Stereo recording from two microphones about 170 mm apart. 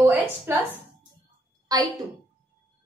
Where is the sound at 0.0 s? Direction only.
10° right (ahead or behind).